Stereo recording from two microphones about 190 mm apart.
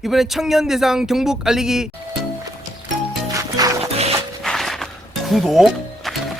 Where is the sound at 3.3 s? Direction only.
15° right (ahead or behind).